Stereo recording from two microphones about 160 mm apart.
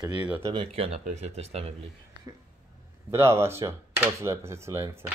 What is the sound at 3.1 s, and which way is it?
Speech, 15° right (ahead or behind).